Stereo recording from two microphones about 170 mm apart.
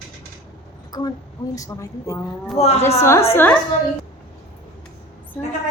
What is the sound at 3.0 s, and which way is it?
Speech, 15° left (ahead or behind).